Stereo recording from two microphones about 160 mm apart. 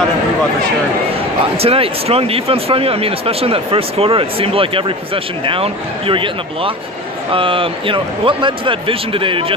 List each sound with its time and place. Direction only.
1.6 s speech: 40° right (ahead or behind)